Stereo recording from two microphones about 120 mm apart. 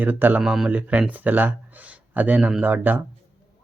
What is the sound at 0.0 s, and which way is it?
Speech, 15° right (ahead or behind).